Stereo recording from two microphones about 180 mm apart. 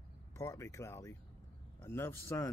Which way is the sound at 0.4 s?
15° left (ahead or behind).